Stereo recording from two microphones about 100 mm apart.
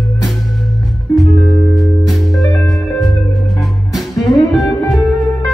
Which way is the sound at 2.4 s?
35° left (ahead or behind).